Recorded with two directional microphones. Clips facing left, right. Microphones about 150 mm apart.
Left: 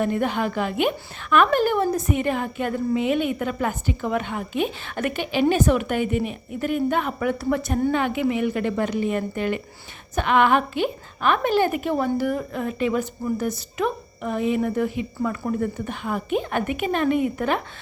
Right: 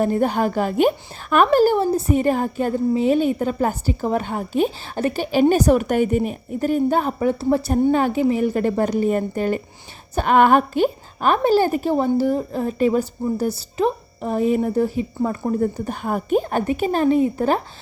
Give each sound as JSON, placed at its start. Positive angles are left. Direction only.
{"t": 0.0, "sound": "a woman's voice", "side_deg": -35}